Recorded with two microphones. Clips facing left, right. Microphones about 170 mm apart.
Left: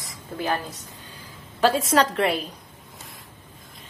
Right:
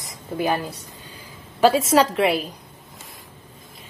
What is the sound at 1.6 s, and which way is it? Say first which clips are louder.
Speech: right 3 dB; 5° right (ahead or behind).